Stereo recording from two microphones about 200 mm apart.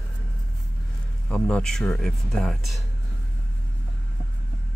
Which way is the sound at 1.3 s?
5° left (ahead or behind).